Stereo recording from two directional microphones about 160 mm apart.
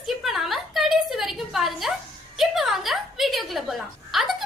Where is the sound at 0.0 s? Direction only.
Centre (ahead or behind).